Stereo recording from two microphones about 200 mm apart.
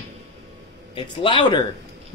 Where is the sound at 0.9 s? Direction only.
25° left (ahead or behind).